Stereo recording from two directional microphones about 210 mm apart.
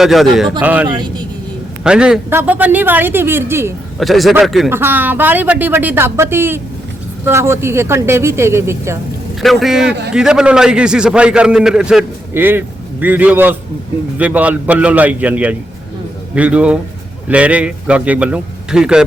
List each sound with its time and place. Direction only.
0.0 s a man's voice: centre (ahead or behind)
0.9 s speech: 20° right (ahead or behind)
1.8 s a man's voice: 5° right (ahead or behind)
4.0 s a man's voice: centre (ahead or behind)
9.4 s a man's voice: centre (ahead or behind)